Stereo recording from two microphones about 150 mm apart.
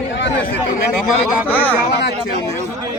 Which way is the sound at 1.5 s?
10° left (ahead or behind).